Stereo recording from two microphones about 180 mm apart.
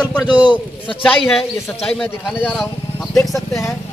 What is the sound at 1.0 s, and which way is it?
A man's voice, 5° left (ahead or behind).